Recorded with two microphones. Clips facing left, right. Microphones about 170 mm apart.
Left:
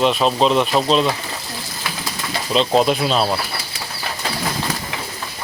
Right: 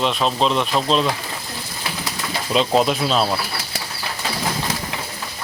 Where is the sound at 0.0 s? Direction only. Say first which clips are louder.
Left 3 dB; 5° left (ahead or behind).